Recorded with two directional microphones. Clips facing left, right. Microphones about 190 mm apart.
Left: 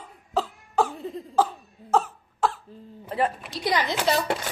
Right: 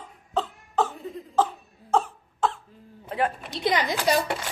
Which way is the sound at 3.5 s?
20° right (ahead or behind).